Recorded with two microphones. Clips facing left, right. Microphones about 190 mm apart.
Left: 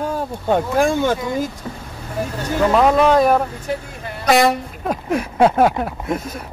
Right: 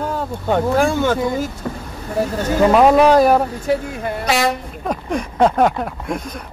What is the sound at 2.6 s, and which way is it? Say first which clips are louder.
Speech: right 3 dB; 10° right (ahead or behind).